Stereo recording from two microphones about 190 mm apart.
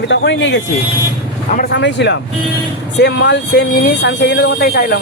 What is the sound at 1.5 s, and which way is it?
Speech, 60° left (ahead or behind).